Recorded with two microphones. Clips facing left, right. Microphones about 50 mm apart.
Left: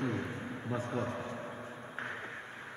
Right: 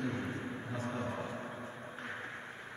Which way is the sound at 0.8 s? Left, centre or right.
Centre.